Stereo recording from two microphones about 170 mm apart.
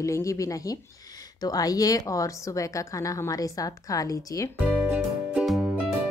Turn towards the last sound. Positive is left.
turn(degrees=0)  # may be behind; listen again after turning